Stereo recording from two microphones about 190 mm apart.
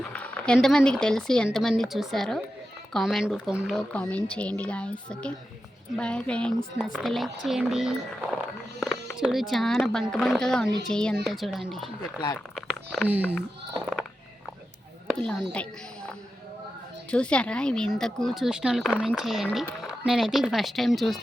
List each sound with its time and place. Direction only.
0.0 s speech: 5° left (ahead or behind)
12.5 s a sound: centre (ahead or behind)
15.1 s speech: 5° left (ahead or behind)
17.1 s speech: 5° left (ahead or behind)